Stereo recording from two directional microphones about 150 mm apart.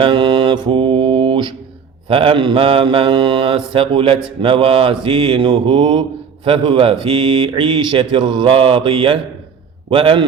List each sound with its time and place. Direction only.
0.0 s mantra: 35° right (ahead or behind)
2.0 s speech: 35° right (ahead or behind)